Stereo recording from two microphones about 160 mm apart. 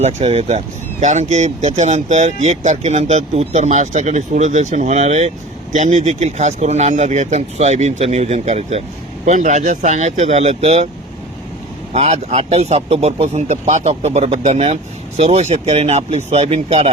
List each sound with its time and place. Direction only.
0.0 s speech: 40° right (ahead or behind)
11.9 s speech: 40° right (ahead or behind)